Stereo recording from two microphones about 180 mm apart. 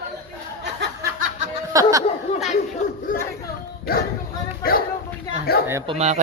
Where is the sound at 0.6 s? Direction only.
70° right (ahead or behind).